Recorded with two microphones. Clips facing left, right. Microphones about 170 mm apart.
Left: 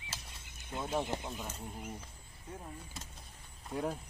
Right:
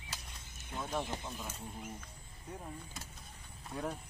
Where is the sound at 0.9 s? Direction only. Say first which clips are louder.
Left 3 dB; 20° left (ahead or behind).